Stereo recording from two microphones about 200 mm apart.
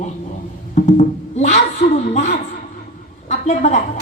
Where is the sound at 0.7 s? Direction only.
40° left (ahead or behind).